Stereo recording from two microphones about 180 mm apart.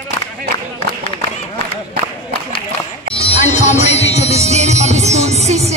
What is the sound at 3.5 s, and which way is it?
Music, 40° left (ahead or behind).